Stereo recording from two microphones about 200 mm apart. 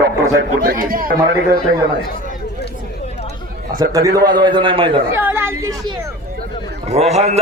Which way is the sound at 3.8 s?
15° right (ahead or behind).